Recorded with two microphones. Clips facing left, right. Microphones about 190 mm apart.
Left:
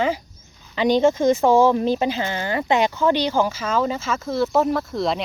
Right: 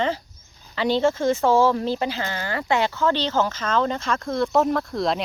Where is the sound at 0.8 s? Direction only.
15° left (ahead or behind).